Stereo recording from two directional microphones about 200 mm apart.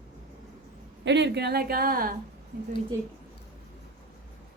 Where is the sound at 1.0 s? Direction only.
60° right (ahead or behind).